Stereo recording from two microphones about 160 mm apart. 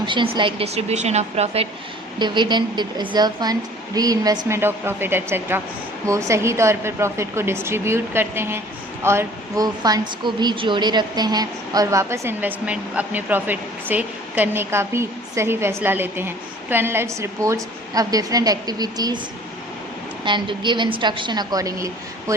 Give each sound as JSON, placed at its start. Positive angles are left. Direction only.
{"t": 0.0, "sound": "speech", "side_deg": -30}
{"t": 2.1, "sound": "a woman's voice", "side_deg": -30}
{"t": 20.2, "sound": "speech", "side_deg": -30}